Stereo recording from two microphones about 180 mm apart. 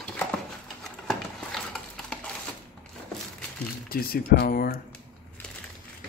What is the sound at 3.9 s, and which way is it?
Speech, 55° left (ahead or behind).